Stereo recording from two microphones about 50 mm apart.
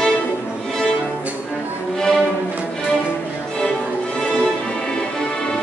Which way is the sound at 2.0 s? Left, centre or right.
Centre.